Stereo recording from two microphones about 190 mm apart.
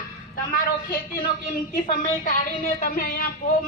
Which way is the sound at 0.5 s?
55° left (ahead or behind).